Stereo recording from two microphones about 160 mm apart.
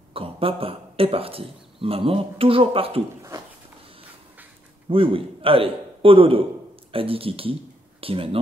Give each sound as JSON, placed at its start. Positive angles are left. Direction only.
{"t": 0.1, "sound": "a man's voice", "side_deg": -35}
{"t": 4.8, "sound": "a man's voice", "side_deg": -35}